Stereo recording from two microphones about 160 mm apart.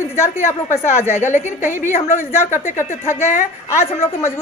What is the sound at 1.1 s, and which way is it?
A woman's voice, 50° left (ahead or behind).